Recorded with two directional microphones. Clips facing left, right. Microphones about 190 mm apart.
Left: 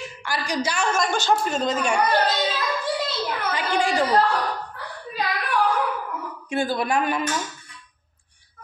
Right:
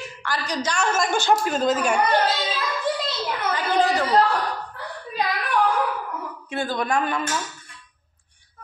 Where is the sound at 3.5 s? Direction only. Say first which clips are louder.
Right 2 dB; 15° left (ahead or behind).